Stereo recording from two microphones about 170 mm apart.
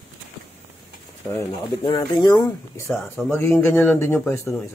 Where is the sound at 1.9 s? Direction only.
15° left (ahead or behind).